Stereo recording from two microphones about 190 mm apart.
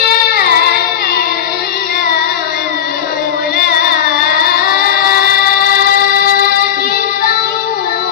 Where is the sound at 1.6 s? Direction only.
55° left (ahead or behind).